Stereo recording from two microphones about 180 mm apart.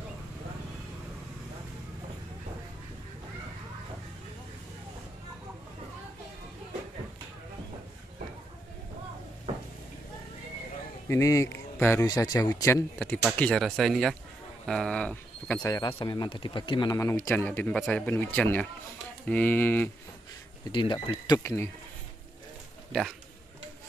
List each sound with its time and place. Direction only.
11.1 s a man's voice: 15° left (ahead or behind)
13.4 s speech: 5° left (ahead or behind)
15.6 s a man's voice: 20° left (ahead or behind)
20.6 s speech: 25° left (ahead or behind)